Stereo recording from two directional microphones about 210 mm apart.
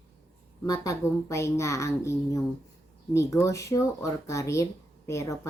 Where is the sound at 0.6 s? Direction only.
15° left (ahead or behind).